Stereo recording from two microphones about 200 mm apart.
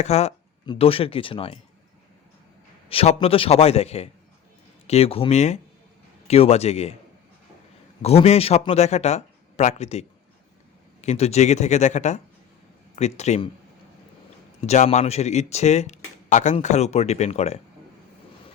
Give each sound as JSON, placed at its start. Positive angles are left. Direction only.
{"t": 0.0, "sound": "speech", "side_deg": 30}
{"t": 2.9, "sound": "speech", "side_deg": 30}
{"t": 8.0, "sound": "speech", "side_deg": 30}
{"t": 14.6, "sound": "speech", "side_deg": 30}